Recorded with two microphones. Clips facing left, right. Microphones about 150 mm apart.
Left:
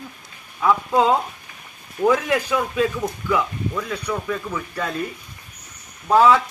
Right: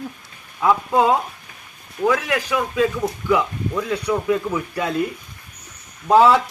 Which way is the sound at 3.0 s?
5° right (ahead or behind).